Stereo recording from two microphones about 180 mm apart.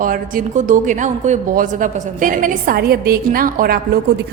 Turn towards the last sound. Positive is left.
turn(degrees=-55)  # may be behind; listen again after turning